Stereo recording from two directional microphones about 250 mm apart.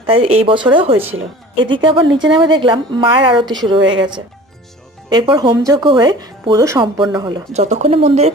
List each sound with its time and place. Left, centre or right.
0.0 s a woman's voice: right